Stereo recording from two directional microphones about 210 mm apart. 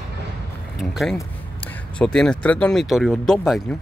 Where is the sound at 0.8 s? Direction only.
Centre (ahead or behind).